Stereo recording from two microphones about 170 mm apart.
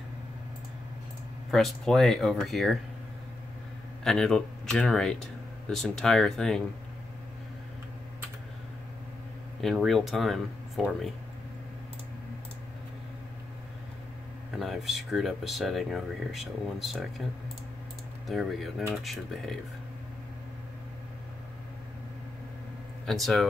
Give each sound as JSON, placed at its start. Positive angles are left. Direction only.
{"t": 1.5, "sound": "speech", "side_deg": 0}
{"t": 4.0, "sound": "speech", "side_deg": 5}
{"t": 9.6, "sound": "speech", "side_deg": 0}
{"t": 14.6, "sound": "speech", "side_deg": 0}
{"t": 18.2, "sound": "speech", "side_deg": 0}
{"t": 23.0, "sound": "speech", "side_deg": 0}